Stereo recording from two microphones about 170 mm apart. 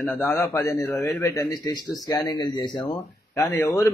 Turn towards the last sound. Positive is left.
turn(degrees=10)  # may be behind; listen again after turning